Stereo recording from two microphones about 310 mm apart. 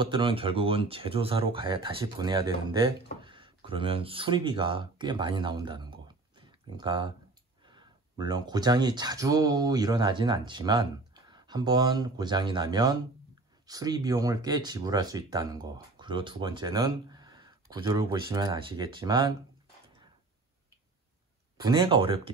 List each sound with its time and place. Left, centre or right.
0.0 s speech: centre
21.6 s speech: centre